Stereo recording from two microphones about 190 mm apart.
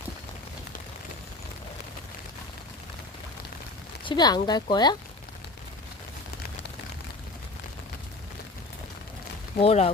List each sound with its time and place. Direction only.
4.0 s speech: 25° left (ahead or behind)
9.6 s speech: 30° left (ahead or behind)